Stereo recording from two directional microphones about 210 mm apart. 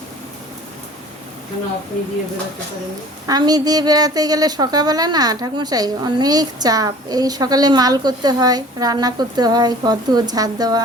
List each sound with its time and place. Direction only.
3.2 s a woman's voice: 20° right (ahead or behind)